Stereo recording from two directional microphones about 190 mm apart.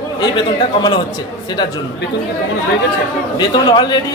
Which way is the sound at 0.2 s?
25° left (ahead or behind).